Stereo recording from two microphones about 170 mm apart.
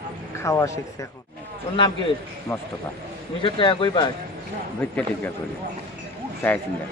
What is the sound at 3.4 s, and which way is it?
Speech, 30° left (ahead or behind).